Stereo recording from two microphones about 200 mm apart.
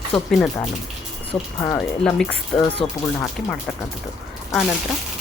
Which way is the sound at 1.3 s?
20° left (ahead or behind).